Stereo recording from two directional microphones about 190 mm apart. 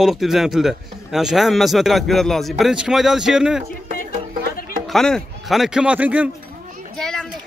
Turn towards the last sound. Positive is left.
turn(degrees=0)  # may be behind; listen again after turning